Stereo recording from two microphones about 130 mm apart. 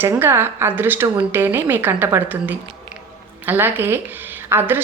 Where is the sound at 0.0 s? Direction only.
15° right (ahead or behind).